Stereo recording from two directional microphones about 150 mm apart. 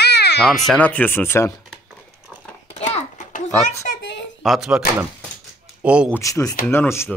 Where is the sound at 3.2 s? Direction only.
55° left (ahead or behind).